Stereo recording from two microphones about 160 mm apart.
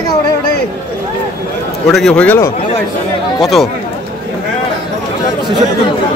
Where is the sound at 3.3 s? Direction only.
Centre (ahead or behind).